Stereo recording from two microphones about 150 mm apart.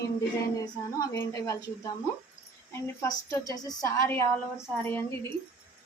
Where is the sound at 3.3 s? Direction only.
25° left (ahead or behind).